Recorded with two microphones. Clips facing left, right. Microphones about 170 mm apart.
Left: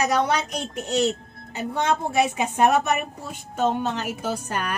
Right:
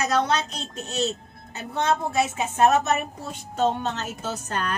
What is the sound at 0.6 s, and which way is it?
Speech, 15° left (ahead or behind).